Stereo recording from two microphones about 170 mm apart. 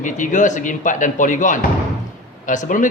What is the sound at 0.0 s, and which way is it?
A man's voice, 50° left (ahead or behind).